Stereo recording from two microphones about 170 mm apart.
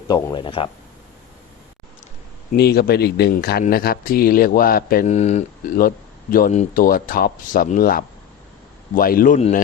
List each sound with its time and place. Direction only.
0.1 s speech: 25° left (ahead or behind)
2.6 s a man's voice: 70° left (ahead or behind)
5.0 s a man's voice: 40° left (ahead or behind)